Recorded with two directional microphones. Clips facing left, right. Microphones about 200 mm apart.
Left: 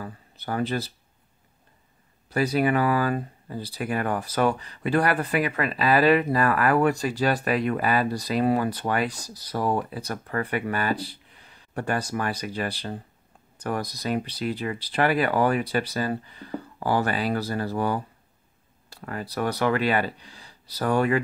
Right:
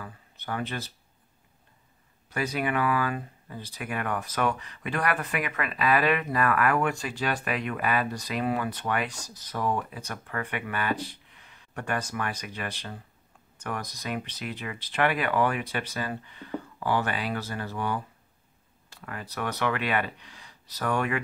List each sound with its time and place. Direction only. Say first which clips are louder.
0.0 s speech: left 5 dB; 35° left (ahead or behind)
2.2 s speech: left 7 dB; 35° left (ahead or behind)